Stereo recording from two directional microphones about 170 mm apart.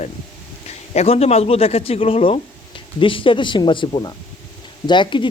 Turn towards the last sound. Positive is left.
turn(degrees=30)  # may be behind; listen again after turning